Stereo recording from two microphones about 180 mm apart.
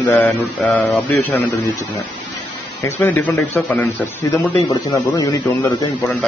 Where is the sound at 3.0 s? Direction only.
10° left (ahead or behind).